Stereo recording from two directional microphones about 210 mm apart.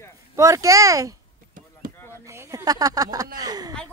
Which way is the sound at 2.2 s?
15° right (ahead or behind).